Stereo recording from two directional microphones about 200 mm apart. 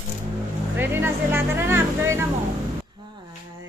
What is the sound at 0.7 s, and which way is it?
Speech, 10° right (ahead or behind).